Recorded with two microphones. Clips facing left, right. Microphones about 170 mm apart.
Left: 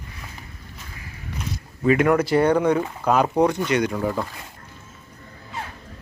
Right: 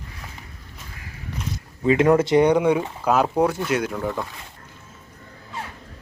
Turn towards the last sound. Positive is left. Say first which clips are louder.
# left 2 dB
turn(degrees=0)  # may be behind; listen again after turning